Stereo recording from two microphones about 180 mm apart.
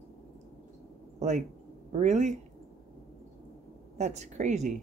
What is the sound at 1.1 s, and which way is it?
Speech, 40° right (ahead or behind).